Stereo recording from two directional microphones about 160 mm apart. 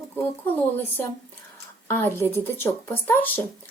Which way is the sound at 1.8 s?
15° left (ahead or behind).